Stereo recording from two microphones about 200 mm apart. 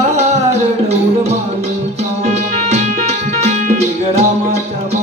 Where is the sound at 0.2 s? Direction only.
35° right (ahead or behind).